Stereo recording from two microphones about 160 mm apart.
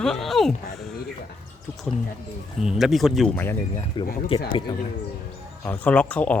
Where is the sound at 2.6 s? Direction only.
5° right (ahead or behind).